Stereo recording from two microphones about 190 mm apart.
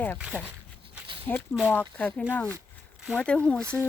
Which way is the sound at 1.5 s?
10° left (ahead or behind).